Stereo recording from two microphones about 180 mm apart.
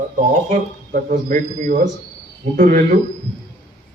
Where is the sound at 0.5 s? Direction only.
45° right (ahead or behind).